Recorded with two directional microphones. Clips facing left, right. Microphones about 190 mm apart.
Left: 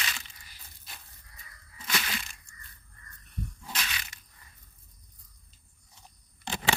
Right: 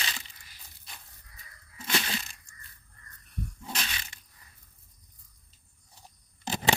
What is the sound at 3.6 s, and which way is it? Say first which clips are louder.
Crushing: right 2 dB; 30° right (ahead or behind).